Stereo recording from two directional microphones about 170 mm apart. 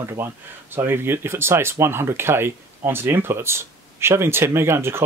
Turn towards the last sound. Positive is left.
turn(degrees=-15)  # may be behind; listen again after turning